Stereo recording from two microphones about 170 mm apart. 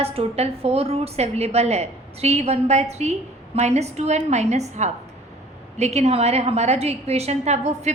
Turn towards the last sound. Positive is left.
turn(degrees=-40)  # may be behind; listen again after turning